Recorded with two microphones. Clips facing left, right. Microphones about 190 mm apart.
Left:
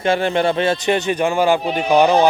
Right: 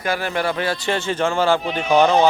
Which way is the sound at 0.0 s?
25° left (ahead or behind).